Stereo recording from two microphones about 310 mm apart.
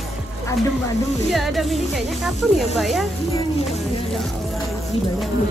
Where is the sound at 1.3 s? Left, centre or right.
Centre.